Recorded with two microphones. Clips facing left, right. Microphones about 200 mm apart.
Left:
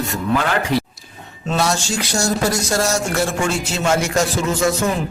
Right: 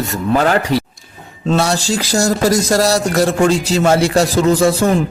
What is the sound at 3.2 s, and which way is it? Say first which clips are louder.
Speech: right 7 dB; 65° right (ahead or behind).